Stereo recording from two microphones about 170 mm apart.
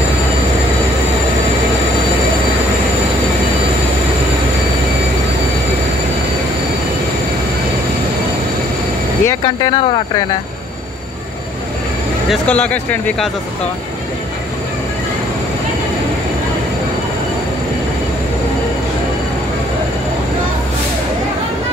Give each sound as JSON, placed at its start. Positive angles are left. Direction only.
{"t": 9.2, "sound": "speech", "side_deg": 20}
{"t": 12.3, "sound": "speech", "side_deg": 10}